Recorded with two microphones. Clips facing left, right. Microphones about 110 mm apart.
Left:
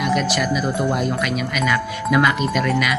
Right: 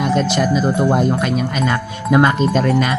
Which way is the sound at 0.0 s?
30° right (ahead or behind).